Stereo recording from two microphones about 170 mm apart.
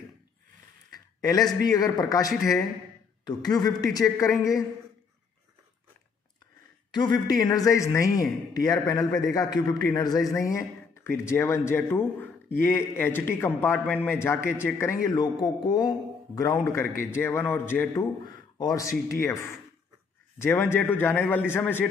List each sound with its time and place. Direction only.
1.6 s a man's voice: 20° left (ahead or behind)
6.9 s a man's voice: 25° left (ahead or behind)
17.9 s a man's voice: 25° left (ahead or behind)